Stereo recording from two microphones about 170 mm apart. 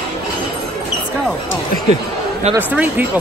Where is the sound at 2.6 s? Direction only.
10° right (ahead or behind).